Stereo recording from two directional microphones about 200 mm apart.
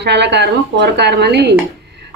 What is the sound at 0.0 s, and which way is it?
Speech, 60° right (ahead or behind).